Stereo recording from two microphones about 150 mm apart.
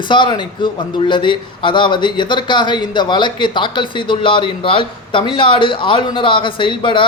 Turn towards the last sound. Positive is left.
turn(degrees=35)  # may be behind; listen again after turning